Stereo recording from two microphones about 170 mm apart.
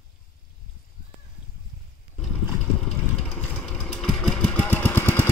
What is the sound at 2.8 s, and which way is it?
Vehicle, 5° left (ahead or behind).